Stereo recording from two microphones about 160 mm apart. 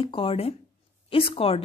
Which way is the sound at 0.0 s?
35° left (ahead or behind).